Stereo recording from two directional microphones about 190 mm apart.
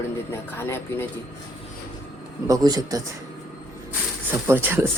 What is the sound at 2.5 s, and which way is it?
Speech, 20° right (ahead or behind).